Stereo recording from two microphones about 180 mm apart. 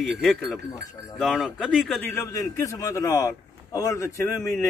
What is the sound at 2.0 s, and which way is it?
A man's voice, 15° left (ahead or behind).